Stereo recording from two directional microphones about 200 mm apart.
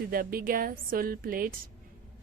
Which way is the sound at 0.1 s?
45° right (ahead or behind).